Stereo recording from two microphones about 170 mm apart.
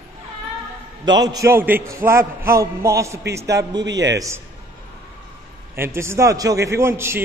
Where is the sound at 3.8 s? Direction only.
90° right.